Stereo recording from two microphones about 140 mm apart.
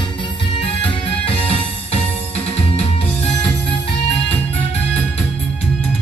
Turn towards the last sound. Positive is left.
turn(degrees=45)  # may be behind; listen again after turning